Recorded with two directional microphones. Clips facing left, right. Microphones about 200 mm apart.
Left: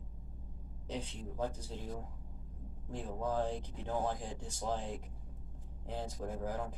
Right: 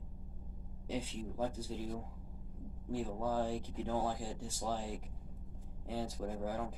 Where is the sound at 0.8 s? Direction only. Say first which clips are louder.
Right 2 dB; 10° right (ahead or behind).